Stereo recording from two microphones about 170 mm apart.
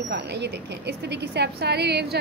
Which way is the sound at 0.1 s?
80° right.